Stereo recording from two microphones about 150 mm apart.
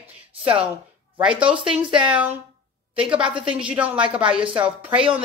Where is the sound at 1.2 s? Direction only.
5° right (ahead or behind).